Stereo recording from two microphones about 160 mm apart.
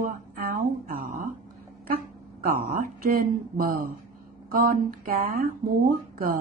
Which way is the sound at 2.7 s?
60° right (ahead or behind).